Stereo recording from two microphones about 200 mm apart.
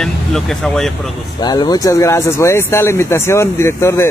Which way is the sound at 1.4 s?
20° left (ahead or behind).